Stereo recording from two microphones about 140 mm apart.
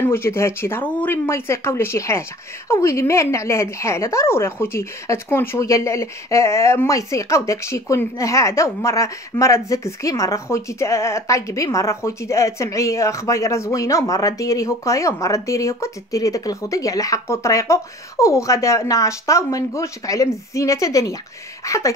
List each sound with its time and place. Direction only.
0.0 s a woman's voice: 15° left (ahead or behind)